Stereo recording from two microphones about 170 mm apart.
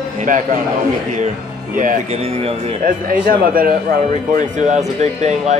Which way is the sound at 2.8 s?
50° right (ahead or behind).